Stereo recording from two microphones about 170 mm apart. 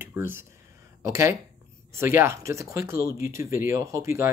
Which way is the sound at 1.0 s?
15° right (ahead or behind).